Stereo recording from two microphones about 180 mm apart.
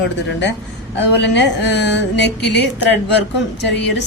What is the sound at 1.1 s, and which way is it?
A woman's voice, 75° left (ahead or behind).